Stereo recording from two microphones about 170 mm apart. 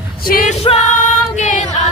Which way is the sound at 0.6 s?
40° left (ahead or behind).